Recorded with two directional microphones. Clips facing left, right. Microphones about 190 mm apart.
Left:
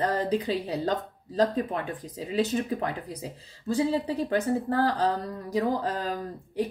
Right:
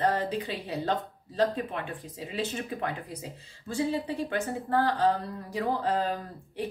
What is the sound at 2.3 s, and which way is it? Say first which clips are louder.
A woman's voice: left 7 dB; 40° left (ahead or behind).